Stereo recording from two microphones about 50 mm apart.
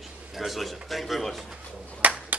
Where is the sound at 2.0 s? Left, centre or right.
Right.